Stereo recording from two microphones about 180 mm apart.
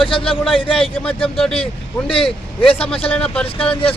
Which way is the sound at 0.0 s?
30° left (ahead or behind).